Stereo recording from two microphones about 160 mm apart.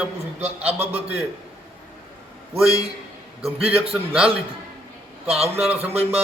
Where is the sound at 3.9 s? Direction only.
5° right (ahead or behind).